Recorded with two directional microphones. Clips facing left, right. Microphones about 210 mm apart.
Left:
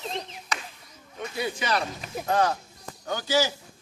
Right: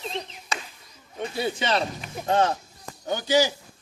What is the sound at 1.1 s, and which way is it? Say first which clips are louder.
A man's voice: right 3 dB; 30° right (ahead or behind).